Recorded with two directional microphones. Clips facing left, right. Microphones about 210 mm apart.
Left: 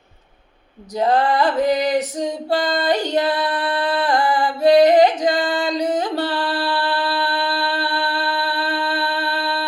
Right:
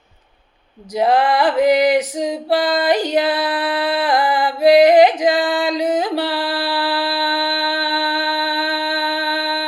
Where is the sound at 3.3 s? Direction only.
90° right.